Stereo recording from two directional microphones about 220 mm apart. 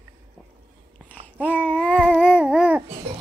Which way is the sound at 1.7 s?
5° left (ahead or behind).